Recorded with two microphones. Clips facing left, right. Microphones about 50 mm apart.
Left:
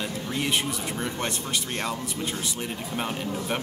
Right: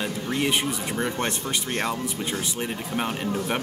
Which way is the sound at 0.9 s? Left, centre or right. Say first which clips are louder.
Right 5 dB; centre.